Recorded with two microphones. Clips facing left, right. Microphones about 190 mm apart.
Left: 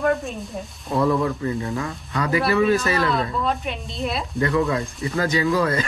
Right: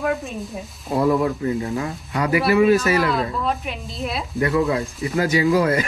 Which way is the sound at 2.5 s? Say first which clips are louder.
Right 4 dB; 15° right (ahead or behind).